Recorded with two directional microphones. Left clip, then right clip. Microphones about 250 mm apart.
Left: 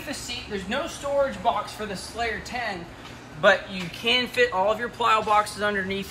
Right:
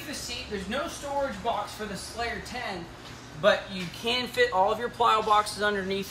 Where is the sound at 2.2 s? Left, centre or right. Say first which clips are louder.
Left 4 dB; centre.